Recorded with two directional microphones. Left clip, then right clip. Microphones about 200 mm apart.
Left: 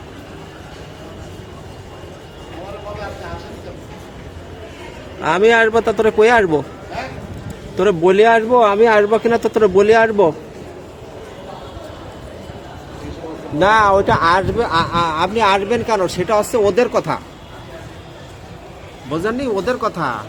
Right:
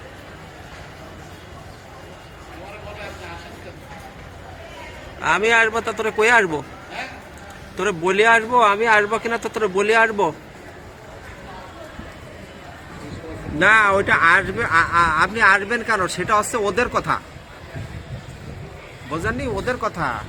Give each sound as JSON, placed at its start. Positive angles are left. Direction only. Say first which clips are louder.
{"t": 5.2, "sound": "a man's voice", "louder": "left 4 dB", "side_deg": 20}
{"t": 7.8, "sound": "a man's voice", "louder": "left 6 dB", "side_deg": 20}
{"t": 13.7, "sound": "speech", "louder": "left 2 dB", "side_deg": 0}
{"t": 19.1, "sound": "speech", "louder": "left 5 dB", "side_deg": 5}